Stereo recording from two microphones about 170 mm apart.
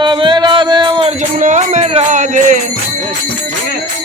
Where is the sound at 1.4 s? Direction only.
50° right (ahead or behind).